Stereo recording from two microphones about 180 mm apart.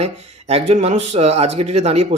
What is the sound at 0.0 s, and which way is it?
Speech, 35° right (ahead or behind).